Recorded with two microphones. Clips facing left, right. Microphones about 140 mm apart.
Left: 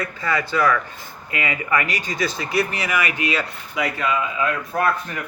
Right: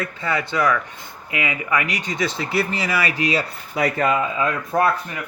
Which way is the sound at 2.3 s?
30° right (ahead or behind).